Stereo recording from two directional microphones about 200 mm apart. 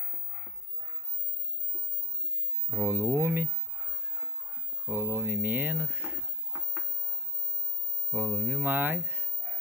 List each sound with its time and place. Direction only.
2.7 s speech: 10° right (ahead or behind)
4.8 s speech: 10° right (ahead or behind)
8.1 s speech: 10° right (ahead or behind)